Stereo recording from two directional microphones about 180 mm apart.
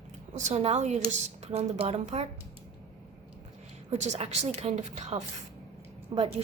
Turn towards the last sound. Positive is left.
turn(degrees=-30)  # may be behind; listen again after turning